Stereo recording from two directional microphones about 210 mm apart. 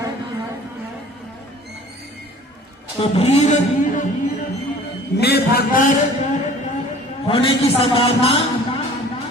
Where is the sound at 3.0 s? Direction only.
30° left (ahead or behind).